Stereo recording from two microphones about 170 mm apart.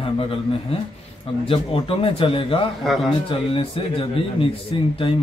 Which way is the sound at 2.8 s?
Centre (ahead or behind).